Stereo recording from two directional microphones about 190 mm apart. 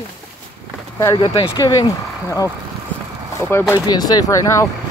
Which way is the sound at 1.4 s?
20° left (ahead or behind).